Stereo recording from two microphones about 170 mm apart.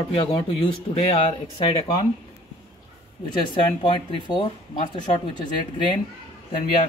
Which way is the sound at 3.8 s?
25° left (ahead or behind).